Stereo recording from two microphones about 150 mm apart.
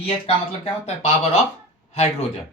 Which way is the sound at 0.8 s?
45° left (ahead or behind).